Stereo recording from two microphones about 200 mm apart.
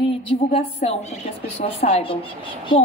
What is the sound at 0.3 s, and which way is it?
A woman's voice, 30° left (ahead or behind).